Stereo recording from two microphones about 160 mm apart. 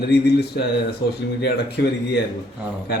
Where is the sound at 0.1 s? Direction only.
85° left.